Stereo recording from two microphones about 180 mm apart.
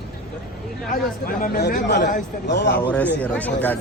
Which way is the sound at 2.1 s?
45° left (ahead or behind).